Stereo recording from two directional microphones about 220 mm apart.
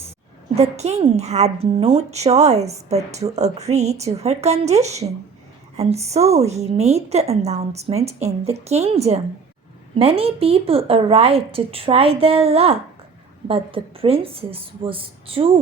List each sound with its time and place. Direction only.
0.5 s a woman's voice: 30° right (ahead or behind)